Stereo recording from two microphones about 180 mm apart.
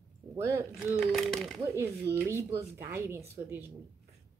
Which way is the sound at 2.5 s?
15° right (ahead or behind).